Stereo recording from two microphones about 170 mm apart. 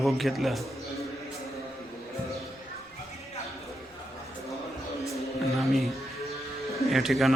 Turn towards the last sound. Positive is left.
turn(degrees=0)  # may be behind; listen again after turning